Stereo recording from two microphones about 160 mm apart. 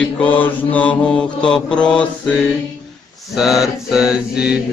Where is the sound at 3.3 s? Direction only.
Centre (ahead or behind).